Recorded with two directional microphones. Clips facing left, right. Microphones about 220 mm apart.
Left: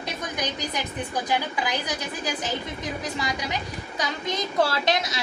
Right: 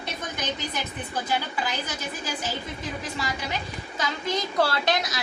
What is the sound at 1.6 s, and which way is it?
Speech, 15° left (ahead or behind).